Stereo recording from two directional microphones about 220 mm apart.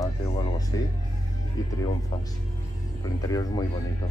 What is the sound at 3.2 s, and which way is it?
Speech, 15° left (ahead or behind).